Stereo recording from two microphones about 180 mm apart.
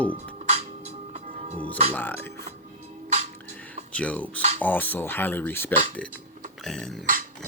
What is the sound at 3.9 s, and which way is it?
Speech, 5° left (ahead or behind).